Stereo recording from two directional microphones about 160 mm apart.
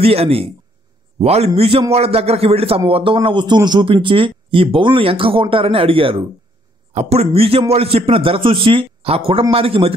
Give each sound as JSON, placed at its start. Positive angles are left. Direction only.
{"t": 0.0, "sound": "a man's voice", "side_deg": -40}